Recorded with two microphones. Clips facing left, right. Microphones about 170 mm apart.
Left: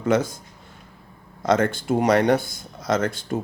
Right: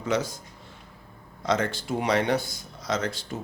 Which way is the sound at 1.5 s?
50° left (ahead or behind).